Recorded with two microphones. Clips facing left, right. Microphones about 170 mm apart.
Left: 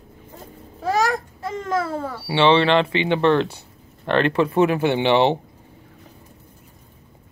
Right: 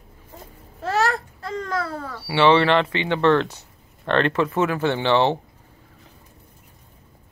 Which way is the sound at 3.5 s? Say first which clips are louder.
Left 4 dB; 15° left (ahead or behind).